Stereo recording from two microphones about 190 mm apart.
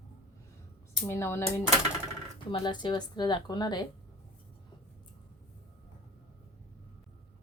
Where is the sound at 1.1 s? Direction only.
15° left (ahead or behind).